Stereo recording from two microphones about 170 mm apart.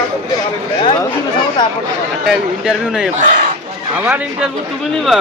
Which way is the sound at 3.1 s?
50° right (ahead or behind).